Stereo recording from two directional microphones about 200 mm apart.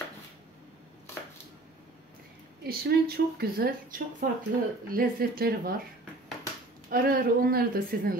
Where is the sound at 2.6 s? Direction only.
50° right (ahead or behind).